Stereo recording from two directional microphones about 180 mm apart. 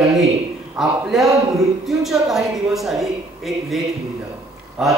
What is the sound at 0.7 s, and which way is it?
A man's voice, centre (ahead or behind).